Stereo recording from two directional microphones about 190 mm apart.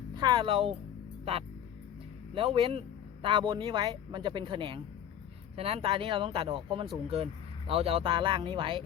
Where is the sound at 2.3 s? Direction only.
30° right (ahead or behind).